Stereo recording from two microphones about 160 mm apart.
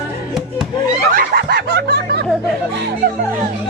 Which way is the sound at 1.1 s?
75° right (ahead or behind).